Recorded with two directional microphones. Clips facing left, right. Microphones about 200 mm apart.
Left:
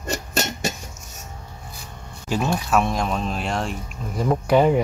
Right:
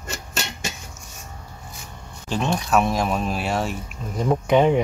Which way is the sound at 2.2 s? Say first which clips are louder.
Left 1 dB; 5° left (ahead or behind).